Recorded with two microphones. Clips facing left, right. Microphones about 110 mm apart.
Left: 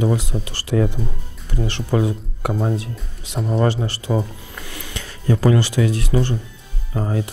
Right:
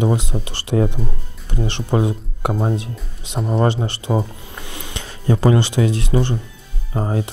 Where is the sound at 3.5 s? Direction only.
25° right (ahead or behind).